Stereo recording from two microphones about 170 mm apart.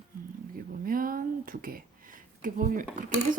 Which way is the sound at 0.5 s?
60° right (ahead or behind).